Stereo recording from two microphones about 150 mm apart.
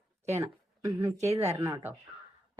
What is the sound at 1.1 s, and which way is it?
Speech, 45° right (ahead or behind).